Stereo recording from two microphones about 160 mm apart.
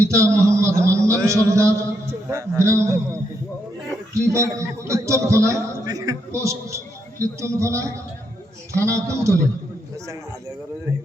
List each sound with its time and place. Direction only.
0.0 s a man's voice: 15° right (ahead or behind)
0.4 s a sound: 20° right (ahead or behind)
2.3 s a man's voice: 20° right (ahead or behind)